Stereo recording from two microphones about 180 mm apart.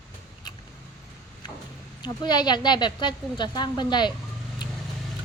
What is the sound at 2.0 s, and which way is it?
A woman's voice, 25° left (ahead or behind).